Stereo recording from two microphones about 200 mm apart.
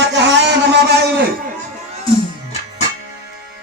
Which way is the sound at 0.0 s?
60° right (ahead or behind).